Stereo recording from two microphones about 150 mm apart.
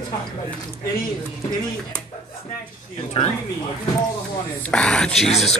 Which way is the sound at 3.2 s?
40° left (ahead or behind).